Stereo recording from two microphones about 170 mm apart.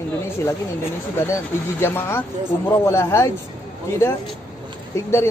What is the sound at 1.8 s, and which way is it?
Speech, 15° left (ahead or behind).